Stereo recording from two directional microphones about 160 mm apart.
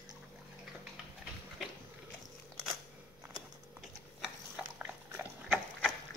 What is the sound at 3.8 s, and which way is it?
Dog, 5° right (ahead or behind).